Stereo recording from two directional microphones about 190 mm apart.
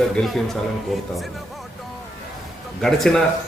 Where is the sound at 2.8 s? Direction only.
5° left (ahead or behind).